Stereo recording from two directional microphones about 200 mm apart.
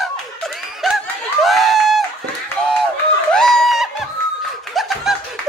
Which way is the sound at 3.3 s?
5° left (ahead or behind).